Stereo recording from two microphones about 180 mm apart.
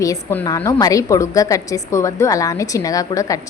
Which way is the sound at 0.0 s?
15° left (ahead or behind).